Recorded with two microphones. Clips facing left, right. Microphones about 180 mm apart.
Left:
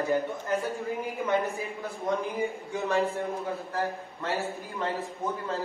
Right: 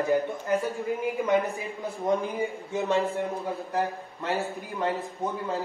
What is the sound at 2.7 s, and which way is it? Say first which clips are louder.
A man's voice: right 2 dB; 20° right (ahead or behind).